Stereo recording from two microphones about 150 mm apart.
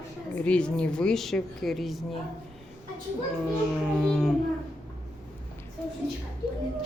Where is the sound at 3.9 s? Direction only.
Centre (ahead or behind).